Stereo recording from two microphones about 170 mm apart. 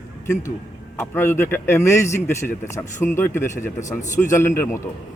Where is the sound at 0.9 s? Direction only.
15° left (ahead or behind).